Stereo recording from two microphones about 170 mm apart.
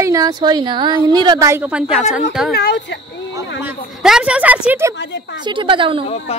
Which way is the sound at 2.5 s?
65° left (ahead or behind).